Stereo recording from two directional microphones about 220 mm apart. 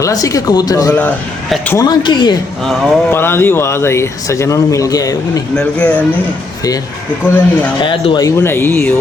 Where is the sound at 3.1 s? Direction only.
10° left (ahead or behind).